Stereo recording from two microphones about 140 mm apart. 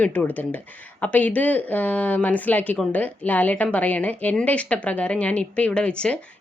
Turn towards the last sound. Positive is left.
turn(degrees=5)  # may be behind; listen again after turning